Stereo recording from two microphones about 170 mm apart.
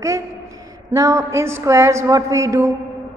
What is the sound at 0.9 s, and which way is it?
A woman's voice, 20° right (ahead or behind).